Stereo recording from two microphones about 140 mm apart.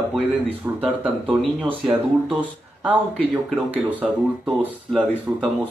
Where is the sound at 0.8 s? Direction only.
10° right (ahead or behind).